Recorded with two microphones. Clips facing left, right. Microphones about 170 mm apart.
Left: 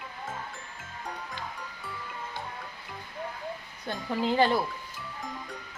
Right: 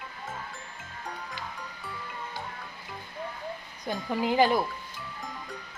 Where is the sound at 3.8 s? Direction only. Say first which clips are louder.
Right 1 dB; 15° right (ahead or behind).